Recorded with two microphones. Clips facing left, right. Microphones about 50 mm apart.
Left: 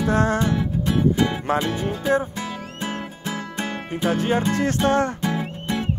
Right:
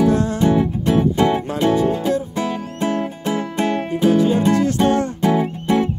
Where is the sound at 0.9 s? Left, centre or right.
Centre.